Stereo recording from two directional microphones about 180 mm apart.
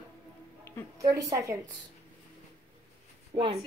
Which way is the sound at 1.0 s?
20° right (ahead or behind).